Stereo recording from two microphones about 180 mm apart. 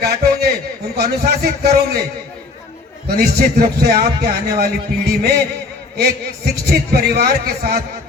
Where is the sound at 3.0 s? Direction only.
60° right (ahead or behind).